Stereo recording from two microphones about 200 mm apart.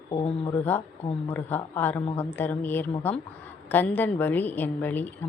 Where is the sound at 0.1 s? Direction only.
25° left (ahead or behind).